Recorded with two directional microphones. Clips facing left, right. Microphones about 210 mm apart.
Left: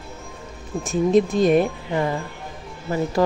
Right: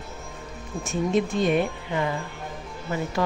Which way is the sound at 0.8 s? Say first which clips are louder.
Left 6 dB; 35° left (ahead or behind).